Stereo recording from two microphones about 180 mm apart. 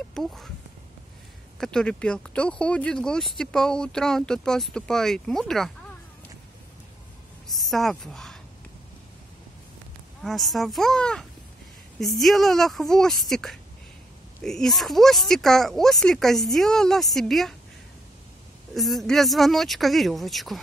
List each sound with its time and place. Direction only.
0.1 s speech: centre (ahead or behind)
1.6 s speech: 5° left (ahead or behind)
7.4 s a woman's voice: centre (ahead or behind)
10.2 s speech: centre (ahead or behind)
18.8 s speech: centre (ahead or behind)